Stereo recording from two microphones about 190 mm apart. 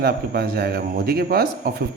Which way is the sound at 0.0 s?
55° right (ahead or behind).